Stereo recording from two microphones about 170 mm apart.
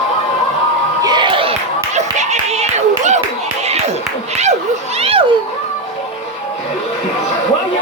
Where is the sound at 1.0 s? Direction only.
25° right (ahead or behind).